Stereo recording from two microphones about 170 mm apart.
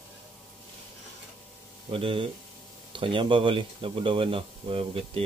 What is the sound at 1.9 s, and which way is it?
Speech, 30° right (ahead or behind).